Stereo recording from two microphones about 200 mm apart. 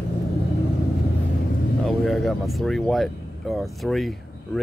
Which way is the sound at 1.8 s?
Centre (ahead or behind).